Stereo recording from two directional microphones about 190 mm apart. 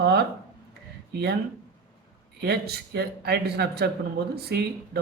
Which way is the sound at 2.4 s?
55° right (ahead or behind).